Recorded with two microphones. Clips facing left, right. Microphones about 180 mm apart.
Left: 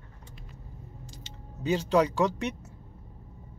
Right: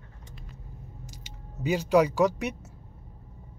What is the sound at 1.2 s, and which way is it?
Speech, 10° right (ahead or behind).